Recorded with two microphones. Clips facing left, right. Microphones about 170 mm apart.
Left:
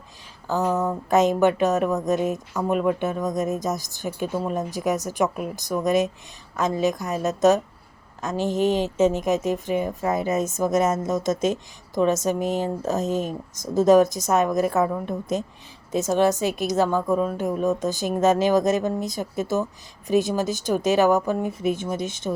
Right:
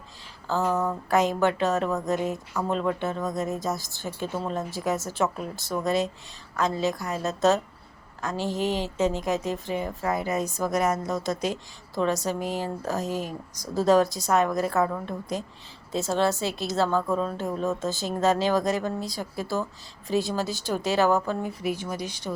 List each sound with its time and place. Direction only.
0.4 s speech: 15° left (ahead or behind)